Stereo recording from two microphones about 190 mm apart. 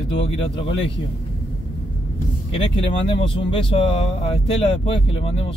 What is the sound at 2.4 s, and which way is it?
Speech, 30° left (ahead or behind).